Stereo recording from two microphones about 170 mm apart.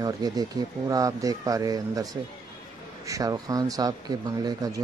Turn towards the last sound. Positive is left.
turn(degrees=-20)  # may be behind; listen again after turning